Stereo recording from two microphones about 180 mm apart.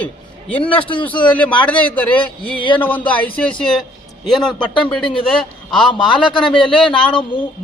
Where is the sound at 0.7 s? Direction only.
30° left (ahead or behind).